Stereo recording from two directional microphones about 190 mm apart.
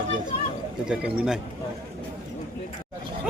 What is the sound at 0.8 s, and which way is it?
Speech, 5° right (ahead or behind).